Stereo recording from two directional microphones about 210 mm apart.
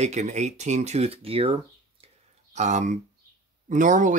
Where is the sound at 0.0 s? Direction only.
35° right (ahead or behind).